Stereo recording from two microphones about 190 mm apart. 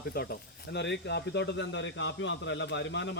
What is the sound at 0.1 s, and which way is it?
Speech, 55° left (ahead or behind).